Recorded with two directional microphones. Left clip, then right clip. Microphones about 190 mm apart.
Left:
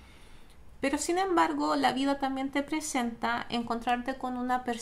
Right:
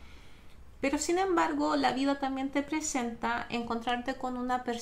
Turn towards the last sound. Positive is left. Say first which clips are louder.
# left 1 dB
turn(degrees=15)  # may be behind; listen again after turning